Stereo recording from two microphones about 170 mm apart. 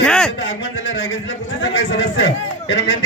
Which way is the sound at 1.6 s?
90° left.